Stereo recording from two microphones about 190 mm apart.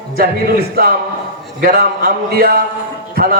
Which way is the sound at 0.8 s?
50° right (ahead or behind).